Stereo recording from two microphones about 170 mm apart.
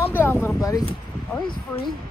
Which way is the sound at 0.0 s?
15° left (ahead or behind).